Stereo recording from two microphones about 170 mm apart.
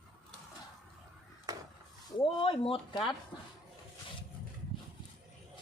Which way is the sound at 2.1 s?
30° left (ahead or behind).